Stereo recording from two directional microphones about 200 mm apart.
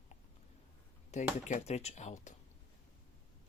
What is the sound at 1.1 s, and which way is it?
Speech, 35° left (ahead or behind).